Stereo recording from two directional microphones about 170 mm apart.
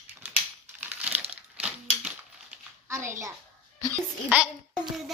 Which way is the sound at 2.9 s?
15° right (ahead or behind).